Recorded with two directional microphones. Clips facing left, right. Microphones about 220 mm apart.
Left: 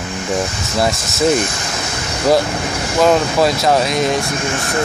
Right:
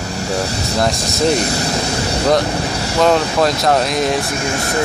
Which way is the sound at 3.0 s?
5° left (ahead or behind).